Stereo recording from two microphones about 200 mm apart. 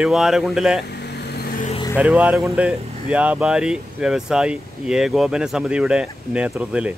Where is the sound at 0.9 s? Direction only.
55° left (ahead or behind).